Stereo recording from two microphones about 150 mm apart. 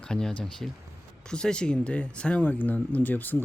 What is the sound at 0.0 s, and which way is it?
Speech, 5° left (ahead or behind).